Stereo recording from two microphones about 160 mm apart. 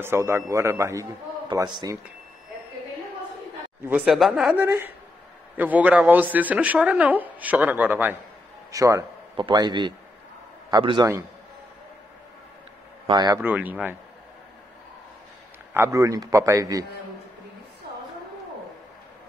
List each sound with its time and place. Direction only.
0.0 s a man's voice: 15° right (ahead or behind)
3.8 s a man's voice: 5° right (ahead or behind); by 11.1 s 30° right (ahead or behind)
13.0 s speech: 25° right (ahead or behind)
13.4 s speech: 10° right (ahead or behind)
15.7 s a man's voice: 20° right (ahead or behind)